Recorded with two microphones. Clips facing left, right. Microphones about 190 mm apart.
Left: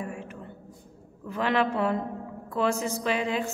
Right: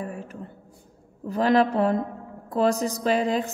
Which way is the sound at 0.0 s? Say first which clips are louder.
Right 2 dB; 35° right (ahead or behind).